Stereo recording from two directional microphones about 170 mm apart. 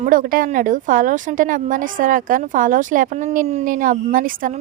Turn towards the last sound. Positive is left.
turn(degrees=-55)  # may be behind; listen again after turning